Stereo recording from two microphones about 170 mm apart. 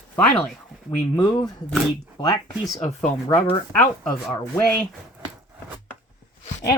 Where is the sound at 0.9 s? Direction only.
20° left (ahead or behind).